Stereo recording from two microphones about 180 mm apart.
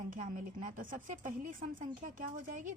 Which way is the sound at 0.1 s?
45° right (ahead or behind).